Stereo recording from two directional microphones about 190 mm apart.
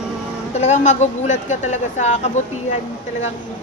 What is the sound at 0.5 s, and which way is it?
Speech, 35° left (ahead or behind).